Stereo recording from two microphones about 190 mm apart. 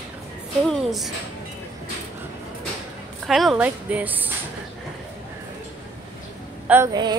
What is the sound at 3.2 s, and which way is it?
Speech, centre (ahead or behind).